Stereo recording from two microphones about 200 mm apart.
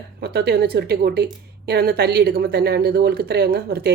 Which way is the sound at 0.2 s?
50° right (ahead or behind).